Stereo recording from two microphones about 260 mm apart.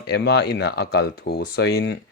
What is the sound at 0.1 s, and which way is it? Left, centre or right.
Speech, left.